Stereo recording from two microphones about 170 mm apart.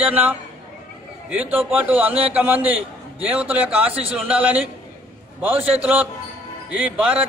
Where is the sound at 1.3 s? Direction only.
10° right (ahead or behind).